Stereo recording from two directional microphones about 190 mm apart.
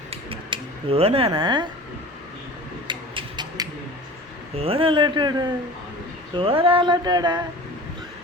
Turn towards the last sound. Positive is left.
turn(degrees=-20)  # may be behind; listen again after turning